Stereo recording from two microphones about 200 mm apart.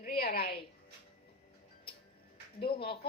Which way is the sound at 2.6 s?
25° left (ahead or behind).